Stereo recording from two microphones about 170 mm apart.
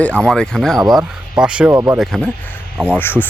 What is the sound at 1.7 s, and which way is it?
Speech, 15° right (ahead or behind).